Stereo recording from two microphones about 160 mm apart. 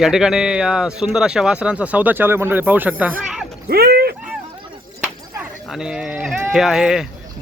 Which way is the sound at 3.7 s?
75° right (ahead or behind).